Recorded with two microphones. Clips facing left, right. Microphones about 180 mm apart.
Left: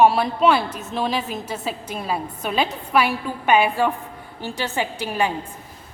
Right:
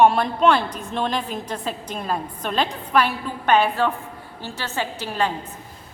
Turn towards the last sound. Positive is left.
turn(degrees=10)  # may be behind; listen again after turning